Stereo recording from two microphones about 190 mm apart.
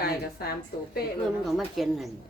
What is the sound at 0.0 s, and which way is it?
Speech, 55° left (ahead or behind).